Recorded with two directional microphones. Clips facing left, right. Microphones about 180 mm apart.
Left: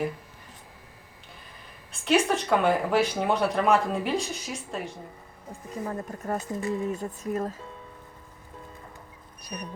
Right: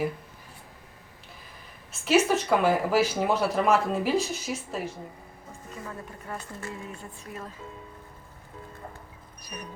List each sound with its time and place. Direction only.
1.9 s speech: 5° right (ahead or behind)
5.5 s speech: 40° left (ahead or behind)
6.5 s speech: 15° left (ahead or behind)
6.9 s speech: 40° left (ahead or behind)